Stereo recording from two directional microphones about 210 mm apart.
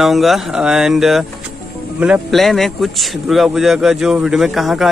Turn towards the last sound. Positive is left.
turn(degrees=0)  # may be behind; listen again after turning